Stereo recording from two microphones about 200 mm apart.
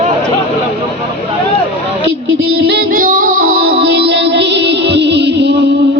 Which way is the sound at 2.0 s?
60° right (ahead or behind).